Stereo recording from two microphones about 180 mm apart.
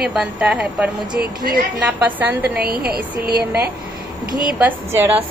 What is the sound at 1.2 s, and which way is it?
Speech, 50° right (ahead or behind).